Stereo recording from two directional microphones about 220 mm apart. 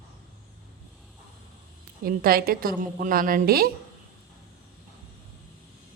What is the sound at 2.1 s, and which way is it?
A woman's voice, 40° right (ahead or behind).